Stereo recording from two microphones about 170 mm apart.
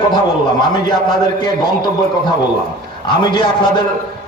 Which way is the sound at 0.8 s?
25° left (ahead or behind).